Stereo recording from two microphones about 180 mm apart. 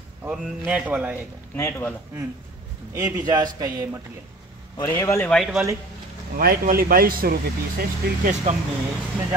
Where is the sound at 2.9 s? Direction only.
20° right (ahead or behind).